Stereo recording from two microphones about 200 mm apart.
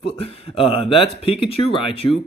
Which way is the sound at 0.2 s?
30° left (ahead or behind).